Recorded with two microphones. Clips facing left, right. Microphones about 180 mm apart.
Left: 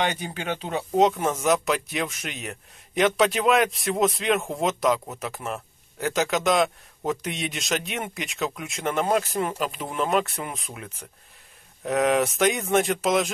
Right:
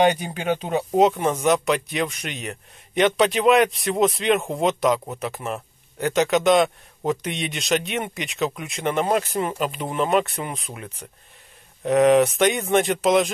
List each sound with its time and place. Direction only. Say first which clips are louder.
0.2 s speech: right 5 dB; 15° right (ahead or behind)
1.0 s speech: right 2 dB; centre (ahead or behind)